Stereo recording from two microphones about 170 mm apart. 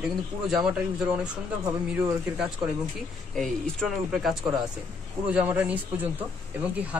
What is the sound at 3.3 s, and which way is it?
Speech, centre (ahead or behind).